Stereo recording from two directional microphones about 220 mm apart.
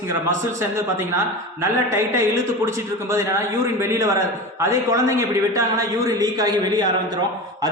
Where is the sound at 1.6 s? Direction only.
10° right (ahead or behind).